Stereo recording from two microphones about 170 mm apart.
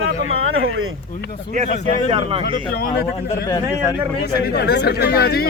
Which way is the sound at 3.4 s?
25° left (ahead or behind).